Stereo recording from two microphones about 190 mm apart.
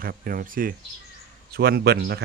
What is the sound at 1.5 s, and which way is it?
Speech, 60° right (ahead or behind).